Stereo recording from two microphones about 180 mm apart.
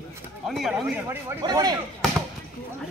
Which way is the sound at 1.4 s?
20° right (ahead or behind).